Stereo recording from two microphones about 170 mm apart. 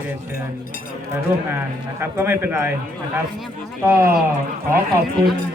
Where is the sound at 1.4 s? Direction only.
15° right (ahead or behind).